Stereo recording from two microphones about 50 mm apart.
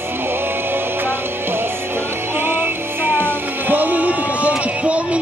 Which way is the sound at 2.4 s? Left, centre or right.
Right.